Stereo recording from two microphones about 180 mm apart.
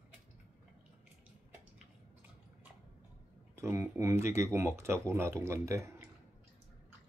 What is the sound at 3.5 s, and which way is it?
Speech, 15° right (ahead or behind).